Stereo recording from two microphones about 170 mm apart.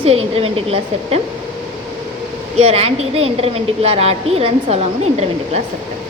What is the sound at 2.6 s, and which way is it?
A woman's voice, 35° right (ahead or behind).